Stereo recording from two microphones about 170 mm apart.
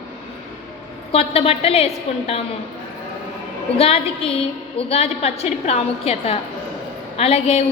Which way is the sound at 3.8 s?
35° left (ahead or behind).